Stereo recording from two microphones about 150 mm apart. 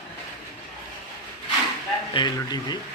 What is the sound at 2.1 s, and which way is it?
Speech, 30° left (ahead or behind).